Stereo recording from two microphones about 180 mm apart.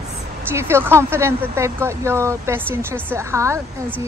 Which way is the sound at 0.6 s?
15° right (ahead or behind).